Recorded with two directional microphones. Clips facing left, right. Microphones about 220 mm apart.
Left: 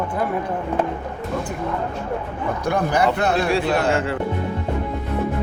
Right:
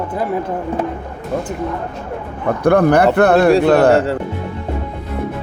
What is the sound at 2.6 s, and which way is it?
Speech, 60° right (ahead or behind).